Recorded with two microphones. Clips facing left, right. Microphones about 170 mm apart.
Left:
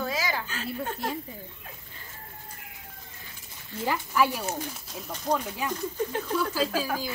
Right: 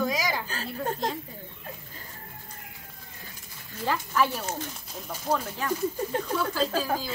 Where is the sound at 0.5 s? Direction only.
35° right (ahead or behind).